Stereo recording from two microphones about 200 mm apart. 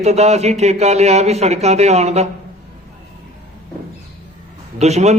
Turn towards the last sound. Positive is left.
turn(degrees=-35)  # may be behind; listen again after turning